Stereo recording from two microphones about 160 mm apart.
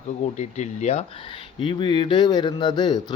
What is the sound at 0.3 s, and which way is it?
Speech, 50° left (ahead or behind).